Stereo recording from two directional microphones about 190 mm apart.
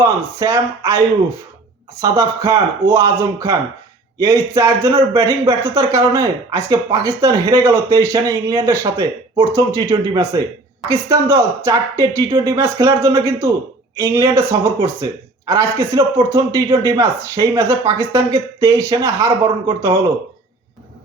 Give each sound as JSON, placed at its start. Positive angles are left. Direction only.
{"t": 0.0, "sound": "speech", "side_deg": -15}